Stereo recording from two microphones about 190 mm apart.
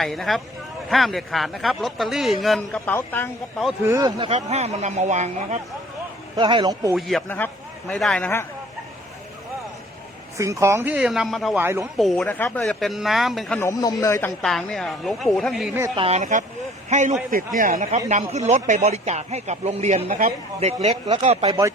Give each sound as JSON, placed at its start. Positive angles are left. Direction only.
{"t": 0.0, "sound": "a man's voice", "side_deg": 0}
{"t": 3.8, "sound": "speech", "side_deg": -15}
{"t": 4.2, "sound": "speech", "side_deg": -35}
{"t": 6.3, "sound": "speech", "side_deg": -25}
{"t": 6.9, "sound": "a man's voice", "side_deg": 0}
{"t": 10.3, "sound": "speech", "side_deg": -15}
{"t": 11.5, "sound": "speech", "side_deg": -10}
{"t": 11.9, "sound": "speech", "side_deg": 0}
{"t": 13.6, "sound": "a man's voice", "side_deg": 15}
{"t": 14.4, "sound": "speech", "side_deg": 0}
{"t": 16.0, "sound": "speech", "side_deg": -35}